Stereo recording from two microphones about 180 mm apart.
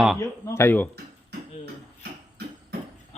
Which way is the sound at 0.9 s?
65° right (ahead or behind).